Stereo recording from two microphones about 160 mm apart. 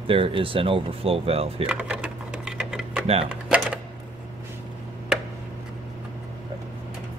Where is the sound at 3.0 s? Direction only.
40° right (ahead or behind).